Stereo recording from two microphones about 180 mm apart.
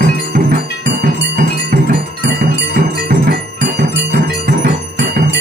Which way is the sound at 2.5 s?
55° right (ahead or behind).